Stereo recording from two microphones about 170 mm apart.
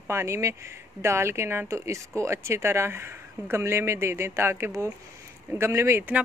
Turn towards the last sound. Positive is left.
turn(degrees=-15)  # may be behind; listen again after turning